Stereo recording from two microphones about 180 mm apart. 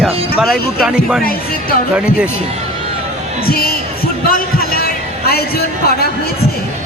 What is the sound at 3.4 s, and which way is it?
Speech, 55° left (ahead or behind).